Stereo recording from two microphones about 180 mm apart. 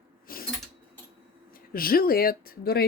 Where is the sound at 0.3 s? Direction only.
55° left (ahead or behind).